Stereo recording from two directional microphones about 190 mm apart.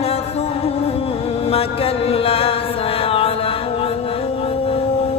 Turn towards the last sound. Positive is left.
turn(degrees=30)  # may be behind; listen again after turning